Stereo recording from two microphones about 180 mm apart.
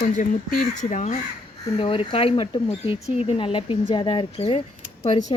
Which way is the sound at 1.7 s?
30° left (ahead or behind).